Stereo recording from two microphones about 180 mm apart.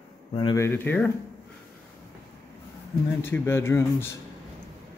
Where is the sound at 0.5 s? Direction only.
10° left (ahead or behind).